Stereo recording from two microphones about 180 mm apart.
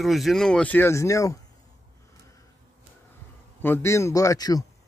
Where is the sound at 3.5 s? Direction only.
10° left (ahead or behind).